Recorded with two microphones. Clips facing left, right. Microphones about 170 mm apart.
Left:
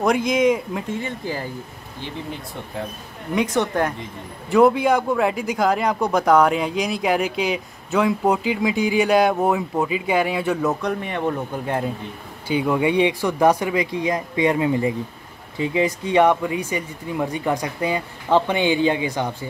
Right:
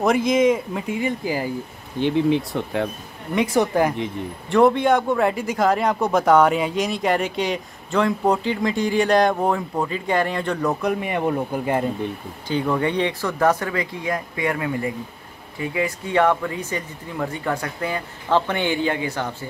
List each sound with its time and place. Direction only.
0.0 s a man's voice: centre (ahead or behind)
2.0 s speech: 70° right (ahead or behind)
3.3 s a man's voice: 5° right (ahead or behind)
10.8 s a man's voice: 5° right (ahead or behind)
12.4 s speech: 10° left (ahead or behind)